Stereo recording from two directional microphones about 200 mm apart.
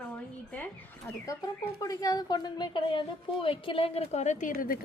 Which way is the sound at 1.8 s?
20° left (ahead or behind).